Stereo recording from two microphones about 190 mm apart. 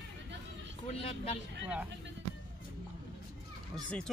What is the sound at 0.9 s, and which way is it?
Speech, 30° left (ahead or behind).